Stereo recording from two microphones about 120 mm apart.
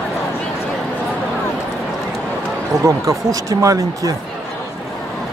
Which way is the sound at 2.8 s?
25° right (ahead or behind).